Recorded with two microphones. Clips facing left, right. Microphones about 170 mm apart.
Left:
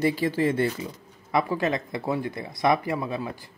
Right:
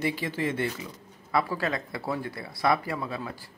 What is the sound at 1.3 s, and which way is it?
Speech, 20° left (ahead or behind).